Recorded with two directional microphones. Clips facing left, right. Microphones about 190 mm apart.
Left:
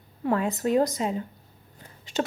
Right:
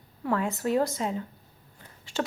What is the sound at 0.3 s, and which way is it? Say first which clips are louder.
A woman's voice: left 3 dB; 20° left (ahead or behind).